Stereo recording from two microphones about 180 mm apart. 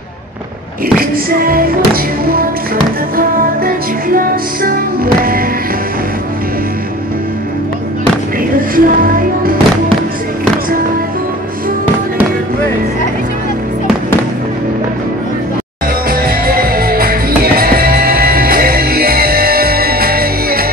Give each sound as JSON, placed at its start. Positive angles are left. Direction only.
{"t": 0.9, "sound": "music", "side_deg": -55}
{"t": 3.2, "sound": "music", "side_deg": -50}
{"t": 8.7, "sound": "music", "side_deg": -50}
{"t": 16.1, "sound": "music", "side_deg": -55}